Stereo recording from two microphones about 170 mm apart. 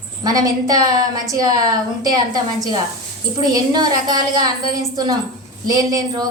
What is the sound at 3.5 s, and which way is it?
Speech, 20° right (ahead or behind).